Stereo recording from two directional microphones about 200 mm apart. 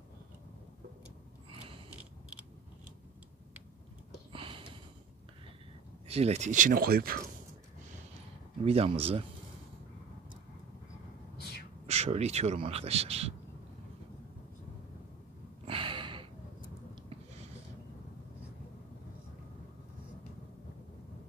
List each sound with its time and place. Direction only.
1.5 s mechanisms: 25° right (ahead or behind)
4.3 s sniff: 25° right (ahead or behind)
6.0 s speech: 30° right (ahead or behind); by 7.2 s 50° right (ahead or behind)
8.6 s speech: 30° right (ahead or behind)
11.3 s gasp: 55° left (ahead or behind)
11.8 s speech: 30° right (ahead or behind)
15.6 s gasp: 25° right (ahead or behind)